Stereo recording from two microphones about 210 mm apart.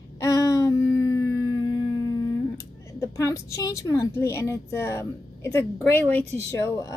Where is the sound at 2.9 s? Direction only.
15° left (ahead or behind).